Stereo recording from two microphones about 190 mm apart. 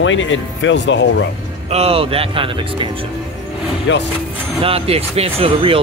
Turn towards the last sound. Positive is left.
turn(degrees=-30)  # may be behind; listen again after turning